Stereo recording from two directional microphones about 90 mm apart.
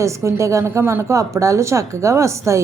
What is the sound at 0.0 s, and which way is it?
Speech, 35° right (ahead or behind).